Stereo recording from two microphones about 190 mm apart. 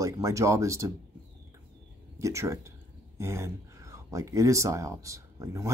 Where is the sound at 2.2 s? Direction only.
15° right (ahead or behind).